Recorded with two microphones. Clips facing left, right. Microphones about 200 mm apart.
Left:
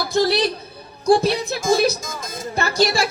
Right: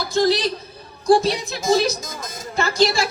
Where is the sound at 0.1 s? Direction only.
60° left (ahead or behind).